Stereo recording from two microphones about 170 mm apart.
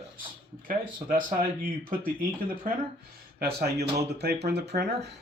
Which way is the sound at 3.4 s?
70° right (ahead or behind).